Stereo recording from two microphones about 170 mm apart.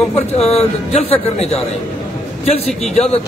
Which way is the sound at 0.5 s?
40° left (ahead or behind).